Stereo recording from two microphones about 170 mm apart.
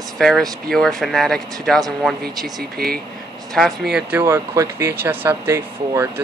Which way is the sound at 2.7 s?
65° right (ahead or behind).